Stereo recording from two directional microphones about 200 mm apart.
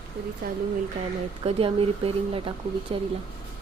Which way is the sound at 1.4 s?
25° right (ahead or behind).